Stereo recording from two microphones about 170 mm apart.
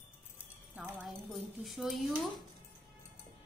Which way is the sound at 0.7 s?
10° right (ahead or behind).